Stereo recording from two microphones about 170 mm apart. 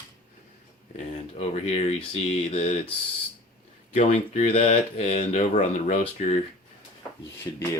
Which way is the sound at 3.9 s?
45° left (ahead or behind).